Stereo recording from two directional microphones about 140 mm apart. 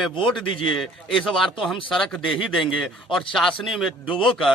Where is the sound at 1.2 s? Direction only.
Centre (ahead or behind).